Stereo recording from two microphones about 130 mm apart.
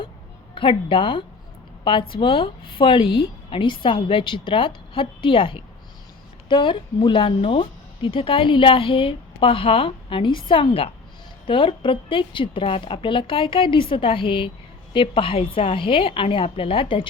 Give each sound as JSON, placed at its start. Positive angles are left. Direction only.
{"t": 0.5, "sound": "a woman's voice", "side_deg": 40}